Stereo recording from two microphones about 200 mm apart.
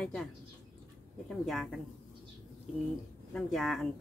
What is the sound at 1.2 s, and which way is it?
Speech, centre (ahead or behind).